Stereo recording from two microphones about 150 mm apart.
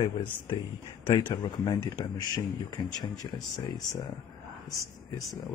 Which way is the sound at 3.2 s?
25° left (ahead or behind).